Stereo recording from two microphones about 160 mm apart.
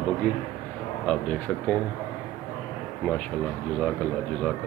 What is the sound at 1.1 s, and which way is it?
Speech, 5° left (ahead or behind).